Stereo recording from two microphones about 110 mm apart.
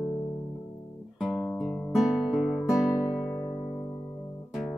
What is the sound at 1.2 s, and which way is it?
Guitar, 10° left (ahead or behind).